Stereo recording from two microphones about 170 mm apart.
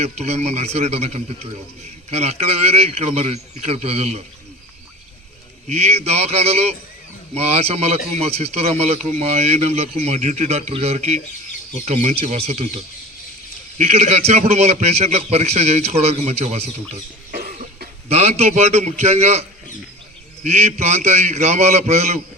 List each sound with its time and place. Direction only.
0.0 s a man's voice: 40° right (ahead or behind)
5.6 s a man's voice: 40° right (ahead or behind)
18.1 s a man's voice: 40° right (ahead or behind)